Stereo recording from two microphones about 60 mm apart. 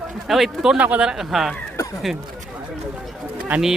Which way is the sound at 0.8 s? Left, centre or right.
Right.